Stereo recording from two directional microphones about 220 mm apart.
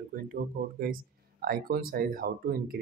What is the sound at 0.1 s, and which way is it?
Speech, 40° right (ahead or behind).